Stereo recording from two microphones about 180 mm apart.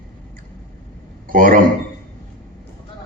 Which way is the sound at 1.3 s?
50° right (ahead or behind).